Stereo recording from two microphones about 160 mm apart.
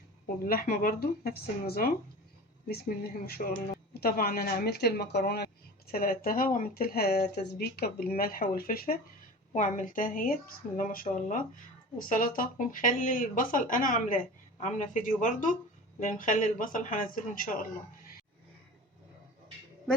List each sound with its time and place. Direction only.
0.4 s speech: 60° left (ahead or behind); by 5.5 s 90° left
5.9 s speech: 65° left (ahead or behind)
9.5 s speech: 50° left (ahead or behind)